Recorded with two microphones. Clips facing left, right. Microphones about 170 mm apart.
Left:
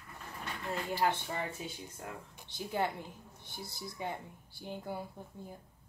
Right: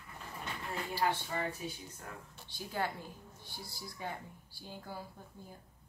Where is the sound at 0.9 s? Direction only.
20° left (ahead or behind).